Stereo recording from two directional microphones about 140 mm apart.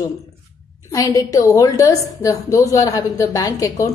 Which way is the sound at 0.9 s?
25° left (ahead or behind).